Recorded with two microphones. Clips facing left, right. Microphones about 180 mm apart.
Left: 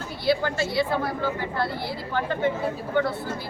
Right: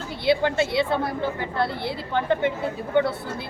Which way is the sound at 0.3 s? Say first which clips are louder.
Right 3 dB; 25° right (ahead or behind).